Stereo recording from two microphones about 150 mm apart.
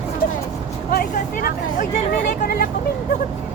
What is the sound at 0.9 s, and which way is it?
Vehicle, 85° left.